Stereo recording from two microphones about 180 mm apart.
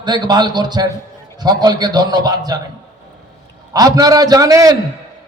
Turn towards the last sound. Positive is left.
turn(degrees=-20)  # may be behind; listen again after turning